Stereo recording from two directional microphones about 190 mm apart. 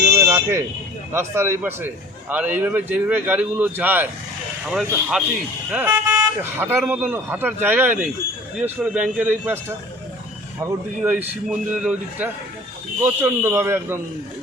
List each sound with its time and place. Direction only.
0.1 s buzzer: 15° right (ahead or behind)
1.1 s speech: 15° right (ahead or behind)